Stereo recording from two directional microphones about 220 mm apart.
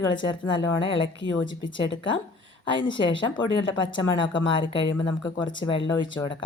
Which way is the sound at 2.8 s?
60° left (ahead or behind).